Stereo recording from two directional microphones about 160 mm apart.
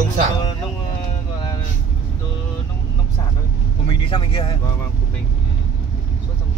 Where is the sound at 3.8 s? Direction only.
30° left (ahead or behind).